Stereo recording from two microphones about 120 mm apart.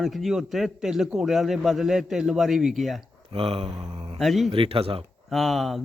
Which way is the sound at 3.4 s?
50° right (ahead or behind).